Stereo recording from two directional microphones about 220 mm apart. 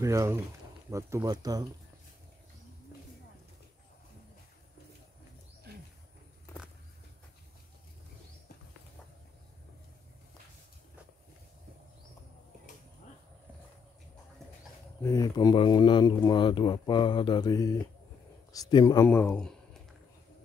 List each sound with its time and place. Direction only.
0.0 s speech: 15° right (ahead or behind)
15.0 s mantra: 15° left (ahead or behind)
18.5 s speech: 20° left (ahead or behind)